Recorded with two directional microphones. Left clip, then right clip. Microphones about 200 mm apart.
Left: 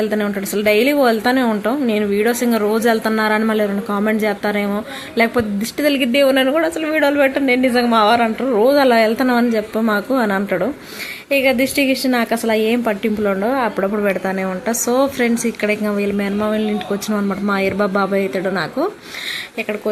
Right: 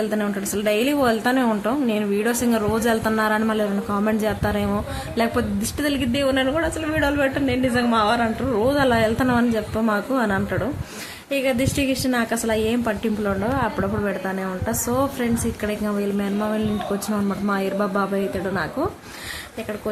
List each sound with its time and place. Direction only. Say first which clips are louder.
0.1 s a woman's voice: left 5 dB; 10° left (ahead or behind)